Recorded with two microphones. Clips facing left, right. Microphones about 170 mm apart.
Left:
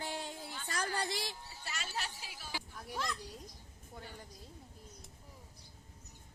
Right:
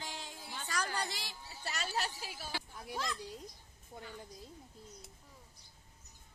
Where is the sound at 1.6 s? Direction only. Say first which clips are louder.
Right 5 dB; 40° right (ahead or behind).